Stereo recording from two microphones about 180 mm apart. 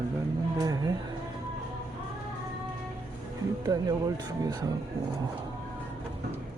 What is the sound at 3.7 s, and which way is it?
Speech, 20° right (ahead or behind).